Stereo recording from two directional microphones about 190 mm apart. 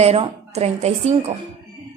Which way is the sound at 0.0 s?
35° right (ahead or behind).